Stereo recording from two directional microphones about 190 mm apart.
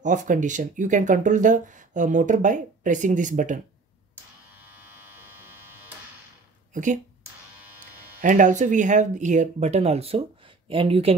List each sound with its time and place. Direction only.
0.0 s speech: 40° right (ahead or behind)
6.7 s speech: 40° right (ahead or behind)
8.2 s speech: 40° right (ahead or behind)